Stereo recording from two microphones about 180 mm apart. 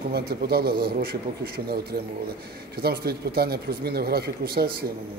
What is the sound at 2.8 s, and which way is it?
Speech, 60° right (ahead or behind).